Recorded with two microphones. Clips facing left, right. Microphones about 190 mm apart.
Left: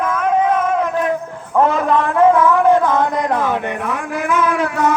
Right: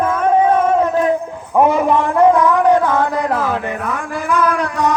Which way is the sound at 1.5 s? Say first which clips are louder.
Right 2 dB; 15° right (ahead or behind).